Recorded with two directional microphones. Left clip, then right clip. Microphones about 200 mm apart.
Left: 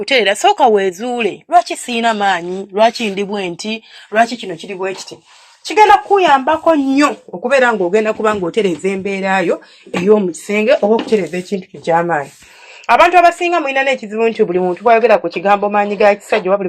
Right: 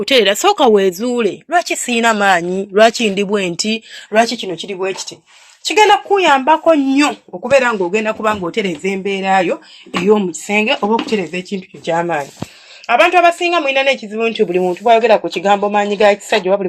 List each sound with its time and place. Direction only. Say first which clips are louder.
0.0 s speech: even; 25° right (ahead or behind)
4.5 s speech: right 1 dB; 20° right (ahead or behind)
5.6 s speech: left 2 dB; 10° right (ahead or behind)
7.4 s speech: left 1 dB; 10° left (ahead or behind)
10.4 s speech: left 3 dB; 10° right (ahead or behind)